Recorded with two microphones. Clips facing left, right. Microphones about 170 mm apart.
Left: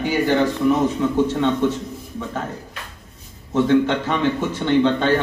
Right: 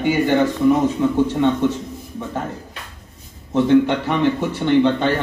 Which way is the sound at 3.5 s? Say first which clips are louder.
Right 2 dB; 15° right (ahead or behind).